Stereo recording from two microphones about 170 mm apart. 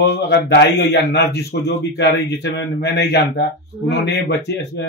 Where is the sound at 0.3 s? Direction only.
80° left.